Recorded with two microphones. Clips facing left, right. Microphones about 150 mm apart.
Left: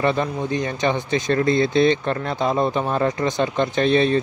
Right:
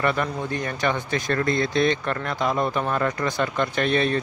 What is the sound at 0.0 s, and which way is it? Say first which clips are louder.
Speech: left 3 dB; 25° left (ahead or behind).